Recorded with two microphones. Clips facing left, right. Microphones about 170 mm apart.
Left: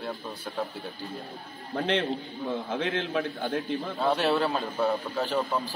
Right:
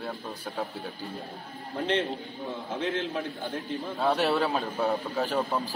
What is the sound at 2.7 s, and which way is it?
Speech, 70° left (ahead or behind).